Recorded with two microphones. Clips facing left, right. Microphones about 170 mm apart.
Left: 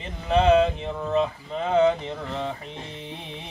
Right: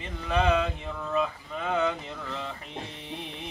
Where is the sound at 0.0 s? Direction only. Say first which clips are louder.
Left 5 dB; 25° left (ahead or behind).